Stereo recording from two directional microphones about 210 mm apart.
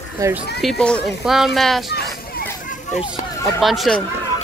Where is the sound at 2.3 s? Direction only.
45° left (ahead or behind).